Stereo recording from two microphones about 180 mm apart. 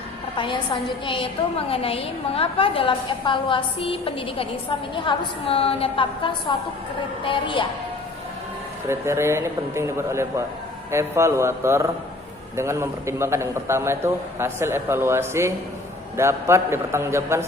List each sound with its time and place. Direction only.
0.3 s a woman's voice: 30° left (ahead or behind)
8.9 s a man's voice: 15° right (ahead or behind)